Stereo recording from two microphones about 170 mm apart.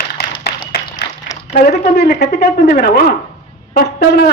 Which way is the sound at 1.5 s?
75° left (ahead or behind).